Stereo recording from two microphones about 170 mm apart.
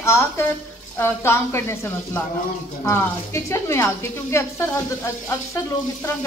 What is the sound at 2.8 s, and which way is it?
A woman's voice, 15° left (ahead or behind).